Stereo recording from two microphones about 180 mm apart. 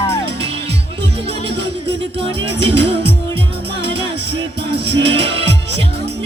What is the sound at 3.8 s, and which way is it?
Music, 70° right (ahead or behind).